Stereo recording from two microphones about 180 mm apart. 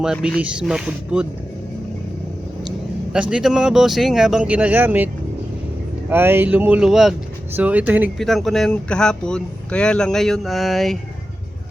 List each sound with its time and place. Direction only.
0.0 s speech: centre (ahead or behind)
2.6 s speech: 5° right (ahead or behind)
6.1 s speech: 10° right (ahead or behind)
8.2 s speech: centre (ahead or behind)